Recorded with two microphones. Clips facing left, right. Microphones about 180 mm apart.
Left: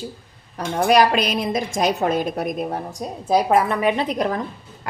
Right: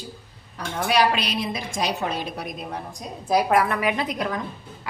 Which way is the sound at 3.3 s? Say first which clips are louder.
Left 3 dB; 25° left (ahead or behind).